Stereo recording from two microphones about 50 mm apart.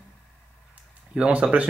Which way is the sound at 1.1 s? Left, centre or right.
Right.